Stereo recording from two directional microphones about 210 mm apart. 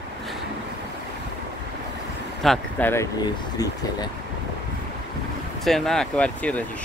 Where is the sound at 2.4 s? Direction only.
5° left (ahead or behind).